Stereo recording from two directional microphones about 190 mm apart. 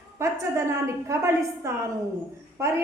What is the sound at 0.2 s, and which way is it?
A woman's voice, 15° right (ahead or behind).